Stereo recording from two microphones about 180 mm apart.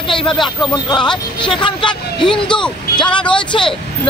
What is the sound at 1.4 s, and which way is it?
Speech, 25° left (ahead or behind).